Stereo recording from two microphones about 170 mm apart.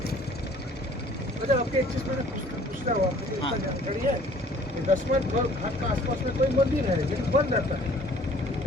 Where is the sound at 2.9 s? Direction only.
45° right (ahead or behind).